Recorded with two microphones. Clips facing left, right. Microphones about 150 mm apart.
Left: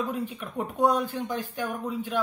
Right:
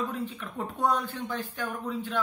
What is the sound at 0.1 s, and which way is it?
Speech, 15° left (ahead or behind).